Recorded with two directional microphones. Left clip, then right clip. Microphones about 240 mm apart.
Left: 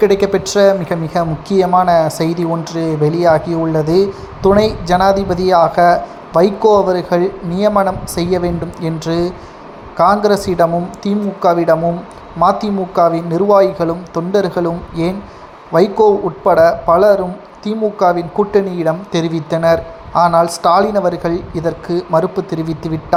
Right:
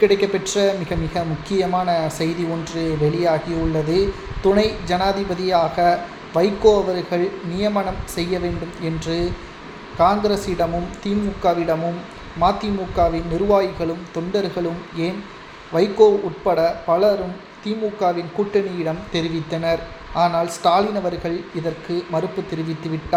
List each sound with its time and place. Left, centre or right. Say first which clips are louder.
0.0 s speech: left 5 dB; left
15.7 s speech: left 4 dB; left